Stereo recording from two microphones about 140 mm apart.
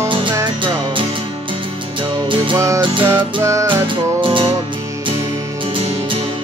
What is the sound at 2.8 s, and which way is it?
Music, 35° right (ahead or behind).